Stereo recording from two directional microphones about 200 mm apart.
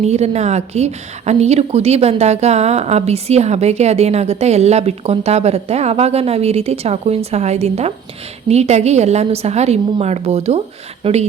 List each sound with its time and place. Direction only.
0.0 s a woman's voice: 35° right (ahead or behind)